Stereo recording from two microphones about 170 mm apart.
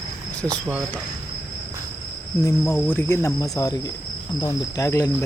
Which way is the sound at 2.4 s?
15° left (ahead or behind).